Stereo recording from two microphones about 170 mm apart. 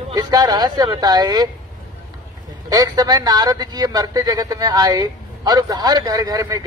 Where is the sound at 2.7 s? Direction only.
25° right (ahead or behind).